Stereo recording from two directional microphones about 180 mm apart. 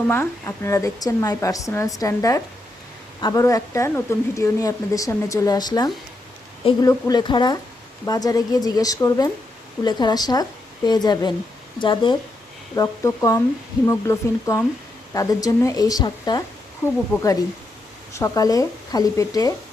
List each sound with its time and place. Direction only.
0.1 s a woman's voice: 15° left (ahead or behind)